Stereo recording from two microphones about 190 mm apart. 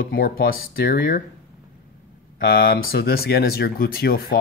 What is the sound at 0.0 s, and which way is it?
Speech, 50° left (ahead or behind).